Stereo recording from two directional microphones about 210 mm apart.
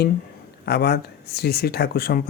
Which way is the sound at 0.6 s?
50° left (ahead or behind).